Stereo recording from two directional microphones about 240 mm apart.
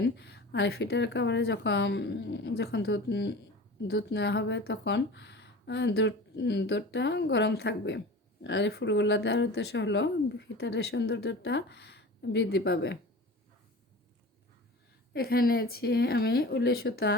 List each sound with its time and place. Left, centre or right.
0.2 s speech: left
15.1 s speech: left